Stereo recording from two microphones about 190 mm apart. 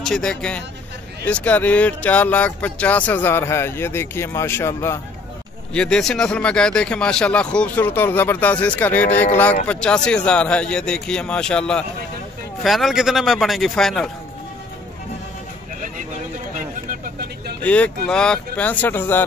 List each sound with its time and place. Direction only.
0.0 s a man's voice: 5° left (ahead or behind)
16.5 s a sound: 45° right (ahead or behind)
17.6 s speech: 5° left (ahead or behind)